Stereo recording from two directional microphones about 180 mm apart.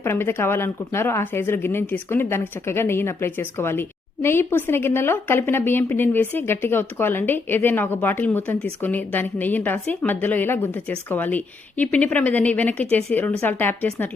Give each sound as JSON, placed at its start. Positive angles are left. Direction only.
{"t": 0.0, "sound": "speech", "side_deg": 15}